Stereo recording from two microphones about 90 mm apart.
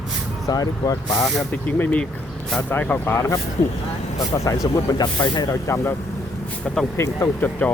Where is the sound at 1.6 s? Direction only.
20° left (ahead or behind).